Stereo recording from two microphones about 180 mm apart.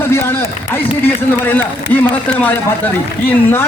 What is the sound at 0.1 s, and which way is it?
Speech, 10° left (ahead or behind).